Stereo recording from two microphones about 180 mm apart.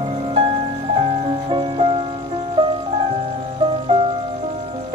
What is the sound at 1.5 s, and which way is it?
Music, 30° right (ahead or behind).